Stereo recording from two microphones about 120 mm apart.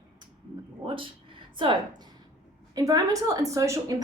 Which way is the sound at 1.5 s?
45° right (ahead or behind).